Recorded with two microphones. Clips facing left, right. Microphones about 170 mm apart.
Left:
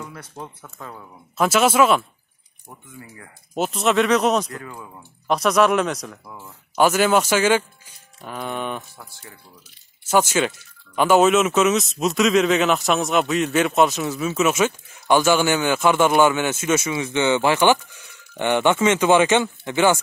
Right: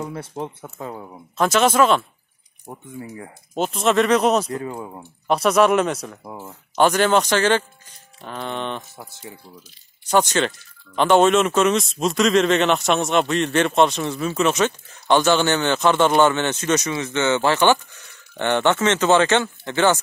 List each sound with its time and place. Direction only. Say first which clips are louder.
0.0 s speech: right 7 dB; 30° right (ahead or behind)
1.4 s speech: even; 5° left (ahead or behind)
2.6 s speech: right 7 dB; 35° right (ahead or behind)
3.5 s a man's voice: right 1 dB; 5° left (ahead or behind)
4.5 s speech: right 7 dB; 30° right (ahead or behind)
5.3 s a man's voice: right 1 dB; centre (ahead or behind)
6.2 s speech: right 5 dB; 30° right (ahead or behind)
6.7 s speech: even; 5° left (ahead or behind)
8.9 s speech: right 5 dB; 20° right (ahead or behind)
10.0 s a man's voice: even; 5° left (ahead or behind)